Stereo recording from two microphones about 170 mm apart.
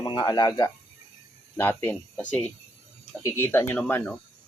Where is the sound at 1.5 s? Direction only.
15° left (ahead or behind).